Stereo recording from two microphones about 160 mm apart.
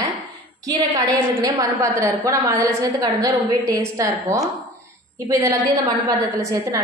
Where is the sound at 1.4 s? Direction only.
20° right (ahead or behind).